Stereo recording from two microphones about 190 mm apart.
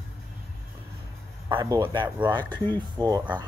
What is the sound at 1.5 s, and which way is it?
Speech, 25° right (ahead or behind).